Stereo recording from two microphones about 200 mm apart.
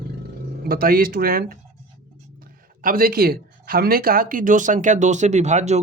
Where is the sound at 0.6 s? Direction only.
50° right (ahead or behind).